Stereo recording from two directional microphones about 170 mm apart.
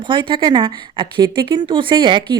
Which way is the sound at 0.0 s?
30° right (ahead or behind).